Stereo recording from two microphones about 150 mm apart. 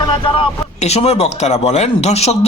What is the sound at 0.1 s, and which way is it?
Speech, 35° left (ahead or behind).